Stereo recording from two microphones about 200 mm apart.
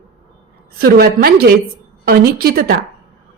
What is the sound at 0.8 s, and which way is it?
A woman's voice, 50° right (ahead or behind).